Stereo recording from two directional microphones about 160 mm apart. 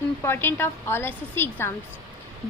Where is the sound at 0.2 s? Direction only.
15° left (ahead or behind).